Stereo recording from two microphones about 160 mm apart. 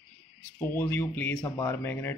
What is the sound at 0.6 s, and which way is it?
Speech, 15° left (ahead or behind).